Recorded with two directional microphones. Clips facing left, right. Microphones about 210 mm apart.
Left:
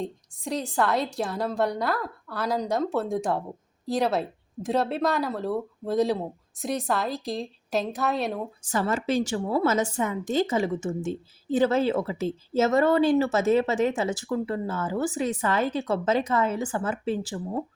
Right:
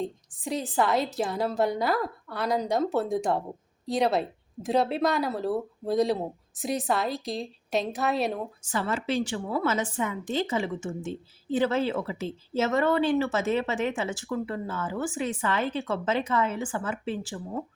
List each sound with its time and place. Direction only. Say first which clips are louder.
0.0 s speech: even; centre (ahead or behind)
8.7 s a woman's voice: left 3 dB; 45° left (ahead or behind)